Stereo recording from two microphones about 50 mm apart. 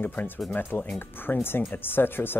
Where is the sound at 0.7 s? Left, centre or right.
Left.